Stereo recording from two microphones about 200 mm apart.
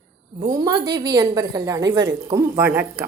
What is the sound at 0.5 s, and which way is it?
A woman's voice, 20° right (ahead or behind).